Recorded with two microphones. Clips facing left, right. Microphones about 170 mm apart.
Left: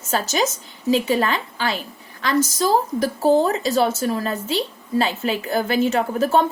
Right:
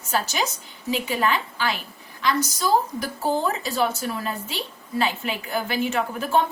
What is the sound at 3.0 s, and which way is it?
Speech, 40° left (ahead or behind).